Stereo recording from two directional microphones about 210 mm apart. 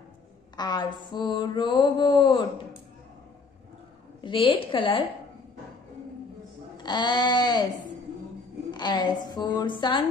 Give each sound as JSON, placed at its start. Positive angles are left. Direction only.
{"t": 0.6, "sound": "mantra", "side_deg": 20}
{"t": 4.2, "sound": "mantra", "side_deg": 25}
{"t": 6.8, "sound": "mantra", "side_deg": 20}
{"t": 8.7, "sound": "mantra", "side_deg": 20}